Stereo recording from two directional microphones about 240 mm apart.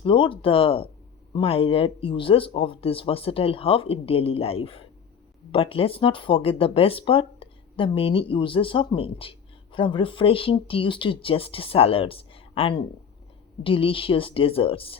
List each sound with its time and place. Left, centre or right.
0.0 s speech: left